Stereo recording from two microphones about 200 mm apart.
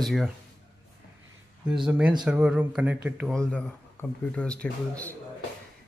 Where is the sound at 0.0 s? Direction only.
Centre (ahead or behind).